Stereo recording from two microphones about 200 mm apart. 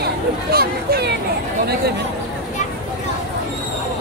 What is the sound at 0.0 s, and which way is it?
Speech, 50° right (ahead or behind).